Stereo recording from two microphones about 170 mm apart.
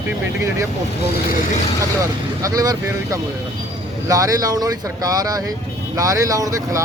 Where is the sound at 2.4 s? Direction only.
20° right (ahead or behind).